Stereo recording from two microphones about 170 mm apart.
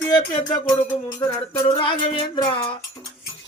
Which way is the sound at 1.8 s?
30° left (ahead or behind).